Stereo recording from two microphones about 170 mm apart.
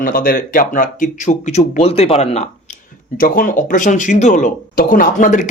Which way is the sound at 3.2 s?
55° left (ahead or behind).